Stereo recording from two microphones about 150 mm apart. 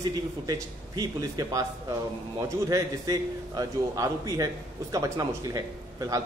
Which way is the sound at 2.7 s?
20° right (ahead or behind).